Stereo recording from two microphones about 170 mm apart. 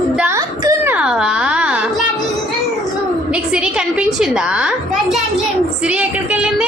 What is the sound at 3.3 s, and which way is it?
A woman's voice, 5° right (ahead or behind).